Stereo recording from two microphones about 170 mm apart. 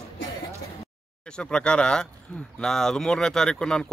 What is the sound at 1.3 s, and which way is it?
Speech, 5° left (ahead or behind).